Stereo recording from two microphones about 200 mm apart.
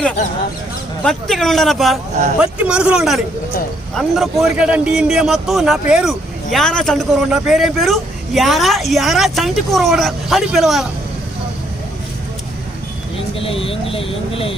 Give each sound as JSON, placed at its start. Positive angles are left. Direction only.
{"t": 1.0, "sound": "a man's voice", "side_deg": 0}
{"t": 13.4, "sound": "speech", "side_deg": 25}